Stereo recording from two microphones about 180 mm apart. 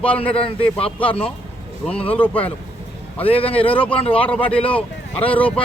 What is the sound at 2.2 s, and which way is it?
Speech, 10° left (ahead or behind).